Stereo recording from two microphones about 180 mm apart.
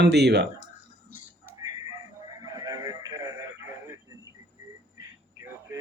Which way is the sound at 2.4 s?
20° right (ahead or behind).